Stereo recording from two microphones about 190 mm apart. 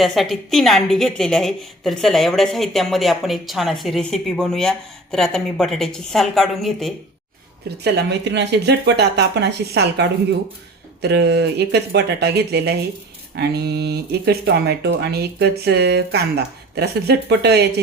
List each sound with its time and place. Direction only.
0.0 s a woman's voice: centre (ahead or behind)
7.9 s speech: 65° right (ahead or behind)